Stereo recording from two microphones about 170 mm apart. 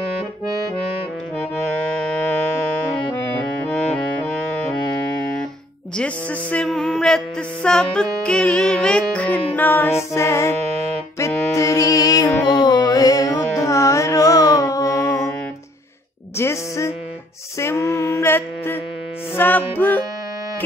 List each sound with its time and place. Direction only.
5.9 s music: 5° left (ahead or behind)
12.4 s carnatic music: 25° left (ahead or behind)
16.3 s music: 15° left (ahead or behind)